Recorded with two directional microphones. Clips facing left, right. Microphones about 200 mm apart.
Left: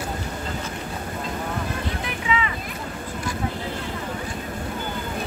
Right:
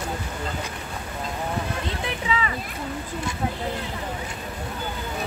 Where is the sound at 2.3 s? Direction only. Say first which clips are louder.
Left 2 dB; 35° right (ahead or behind).